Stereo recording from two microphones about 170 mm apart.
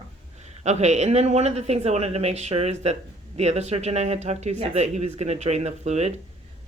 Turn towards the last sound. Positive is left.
turn(degrees=-40)  # may be behind; listen again after turning